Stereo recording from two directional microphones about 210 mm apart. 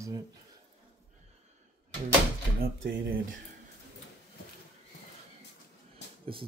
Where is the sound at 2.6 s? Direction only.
45° right (ahead or behind).